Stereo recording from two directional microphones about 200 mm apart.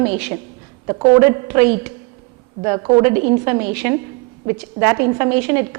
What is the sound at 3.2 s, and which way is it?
Speech, 35° right (ahead or behind).